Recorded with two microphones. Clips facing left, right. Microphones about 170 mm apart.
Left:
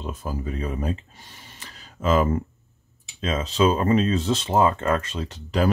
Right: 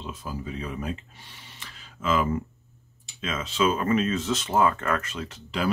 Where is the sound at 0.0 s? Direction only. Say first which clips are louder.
Left 4 dB; 50° left (ahead or behind).